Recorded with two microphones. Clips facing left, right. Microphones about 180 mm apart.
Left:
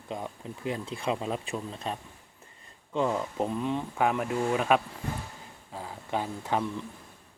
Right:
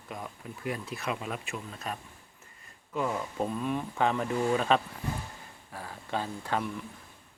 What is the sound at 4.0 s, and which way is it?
Speech, 10° left (ahead or behind).